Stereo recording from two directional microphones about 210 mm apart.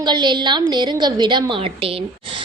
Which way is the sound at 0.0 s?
20° right (ahead or behind).